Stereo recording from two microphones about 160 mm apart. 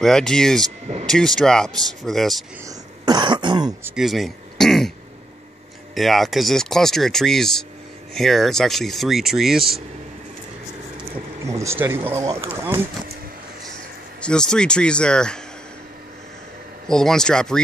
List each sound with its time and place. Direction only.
0.0 s speech: 5° left (ahead or behind)
2.6 s speech: 25° right (ahead or behind)
3.8 s speech: 5° right (ahead or behind)
5.9 s speech: centre (ahead or behind)
11.5 s speech: 15° right (ahead or behind)
13.7 s speech: 5° left (ahead or behind)
16.8 s speech: 5° left (ahead or behind)